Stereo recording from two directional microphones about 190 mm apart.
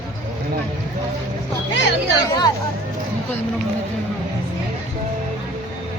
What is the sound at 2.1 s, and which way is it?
Speech, 20° left (ahead or behind).